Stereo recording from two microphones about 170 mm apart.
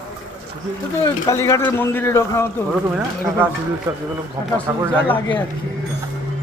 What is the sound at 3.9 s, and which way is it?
Speech, 20° right (ahead or behind).